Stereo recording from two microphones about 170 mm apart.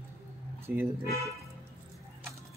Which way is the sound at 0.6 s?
10° right (ahead or behind).